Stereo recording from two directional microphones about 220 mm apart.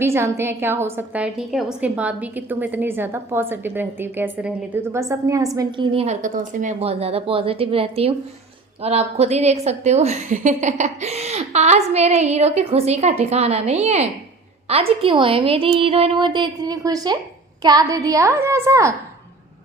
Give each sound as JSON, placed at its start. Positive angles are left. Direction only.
{"t": 0.0, "sound": "a woman's voice", "side_deg": -10}